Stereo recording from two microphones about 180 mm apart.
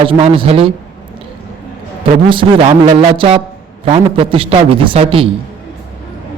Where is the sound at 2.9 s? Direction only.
30° right (ahead or behind).